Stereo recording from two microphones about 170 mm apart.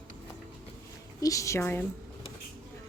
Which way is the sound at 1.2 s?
20° left (ahead or behind).